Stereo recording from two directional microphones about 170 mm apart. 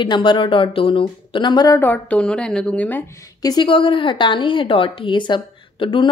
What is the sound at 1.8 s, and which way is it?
A woman's voice, 10° left (ahead or behind).